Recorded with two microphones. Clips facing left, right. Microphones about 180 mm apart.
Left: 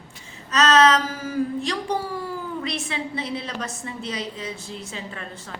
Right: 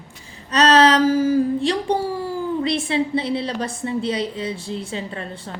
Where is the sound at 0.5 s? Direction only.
35° right (ahead or behind).